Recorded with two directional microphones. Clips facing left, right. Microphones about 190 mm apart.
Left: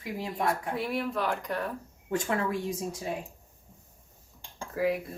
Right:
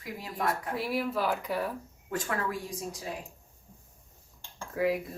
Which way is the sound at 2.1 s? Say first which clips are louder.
Left 4 dB; 25° left (ahead or behind).